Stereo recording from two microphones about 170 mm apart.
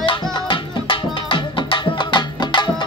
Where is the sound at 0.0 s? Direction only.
30° left (ahead or behind).